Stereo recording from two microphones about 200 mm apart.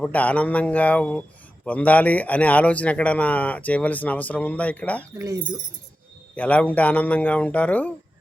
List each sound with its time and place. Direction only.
0.0 s a man's voice: 5° left (ahead or behind)
5.1 s speech: 15° right (ahead or behind)
6.3 s a man's voice: 5° left (ahead or behind)